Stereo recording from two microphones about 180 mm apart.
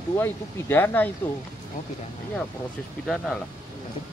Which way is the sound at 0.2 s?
10° left (ahead or behind).